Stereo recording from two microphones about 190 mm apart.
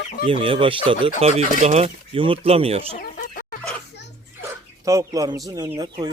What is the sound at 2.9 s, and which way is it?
Chicken, 55° left (ahead or behind).